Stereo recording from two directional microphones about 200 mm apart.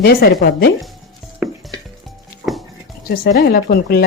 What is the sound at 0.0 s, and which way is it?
Speech, 50° left (ahead or behind).